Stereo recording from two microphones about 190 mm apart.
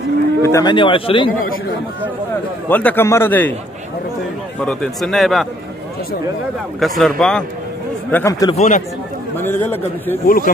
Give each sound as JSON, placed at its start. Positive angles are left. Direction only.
{"t": 0.4, "sound": "speech", "side_deg": 15}
{"t": 2.7, "sound": "a man's voice", "side_deg": 10}
{"t": 4.6, "sound": "speech", "side_deg": 0}
{"t": 6.8, "sound": "speech", "side_deg": 0}
{"t": 8.1, "sound": "a man's voice", "side_deg": 15}
{"t": 8.5, "sound": "speech", "side_deg": 40}
{"t": 9.4, "sound": "a man's voice", "side_deg": 10}
{"t": 10.2, "sound": "speech", "side_deg": 50}